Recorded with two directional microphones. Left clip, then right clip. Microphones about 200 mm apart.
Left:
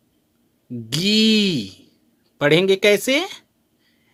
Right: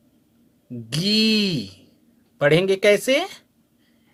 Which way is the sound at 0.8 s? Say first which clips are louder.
Left 2 dB; 30° left (ahead or behind).